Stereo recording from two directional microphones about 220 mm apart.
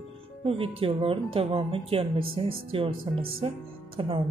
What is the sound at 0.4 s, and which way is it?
Speech, 25° right (ahead or behind).